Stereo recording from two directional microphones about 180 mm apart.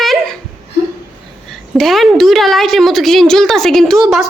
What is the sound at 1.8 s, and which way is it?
A woman's voice, centre (ahead or behind).